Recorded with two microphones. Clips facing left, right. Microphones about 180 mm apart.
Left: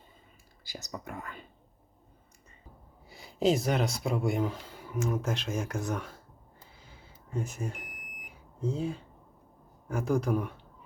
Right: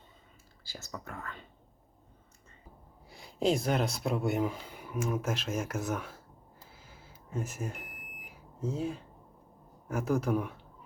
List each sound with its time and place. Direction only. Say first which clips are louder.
0.6 s speech: left 3 dB; 15° left (ahead or behind)
3.1 s speech: left 2 dB; centre (ahead or behind)
6.6 s smoke detector: left 1 dB; centre (ahead or behind)
9.9 s speech: left 1 dB; 5° right (ahead or behind)